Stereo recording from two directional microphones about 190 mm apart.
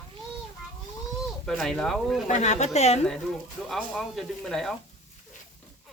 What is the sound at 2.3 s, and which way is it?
Speech, 40° left (ahead or behind).